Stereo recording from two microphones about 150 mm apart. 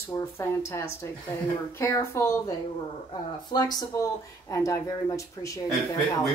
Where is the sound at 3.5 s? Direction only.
25° left (ahead or behind).